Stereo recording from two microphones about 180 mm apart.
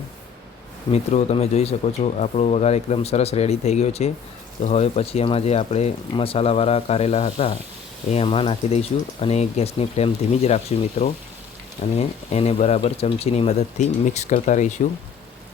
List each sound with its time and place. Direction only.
0.9 s speech: 35° left (ahead or behind)